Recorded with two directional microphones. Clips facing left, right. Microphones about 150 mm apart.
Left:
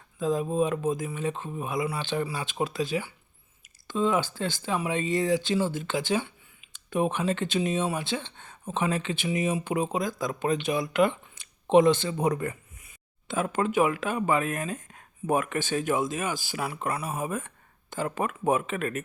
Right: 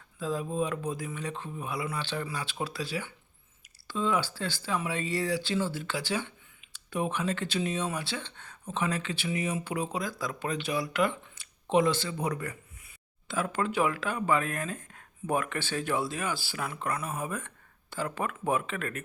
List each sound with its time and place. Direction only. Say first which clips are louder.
0.2 s speech: left 5 dB; 20° left (ahead or behind)